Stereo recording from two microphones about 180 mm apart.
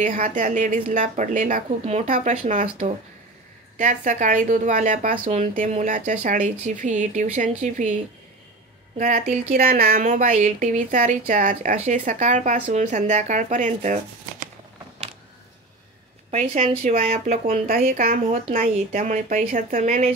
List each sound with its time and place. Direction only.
0.0 s speech: 45° right (ahead or behind)
16.3 s speech: 35° right (ahead or behind)